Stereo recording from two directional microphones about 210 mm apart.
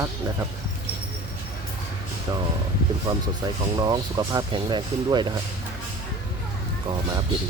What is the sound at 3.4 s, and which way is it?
Speech, 20° right (ahead or behind).